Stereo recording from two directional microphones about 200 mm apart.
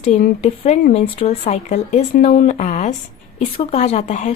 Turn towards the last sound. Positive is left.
turn(degrees=35)  # may be behind; listen again after turning